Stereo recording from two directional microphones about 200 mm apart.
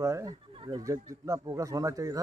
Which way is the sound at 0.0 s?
15° right (ahead or behind).